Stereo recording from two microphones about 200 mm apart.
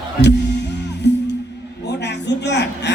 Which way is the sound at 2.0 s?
60° left (ahead or behind).